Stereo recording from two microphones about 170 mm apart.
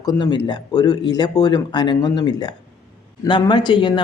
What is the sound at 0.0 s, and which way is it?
Speech, 25° left (ahead or behind).